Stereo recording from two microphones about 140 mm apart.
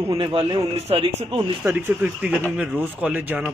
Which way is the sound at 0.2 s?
40° right (ahead or behind).